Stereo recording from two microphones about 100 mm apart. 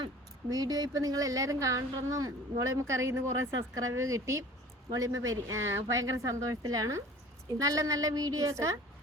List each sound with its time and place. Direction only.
0.5 s speech: 40° right (ahead or behind)